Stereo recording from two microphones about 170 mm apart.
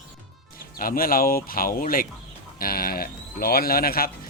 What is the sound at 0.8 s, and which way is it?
Speech, 60° left (ahead or behind).